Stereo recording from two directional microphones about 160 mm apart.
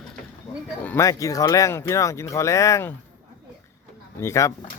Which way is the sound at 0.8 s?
15° left (ahead or behind).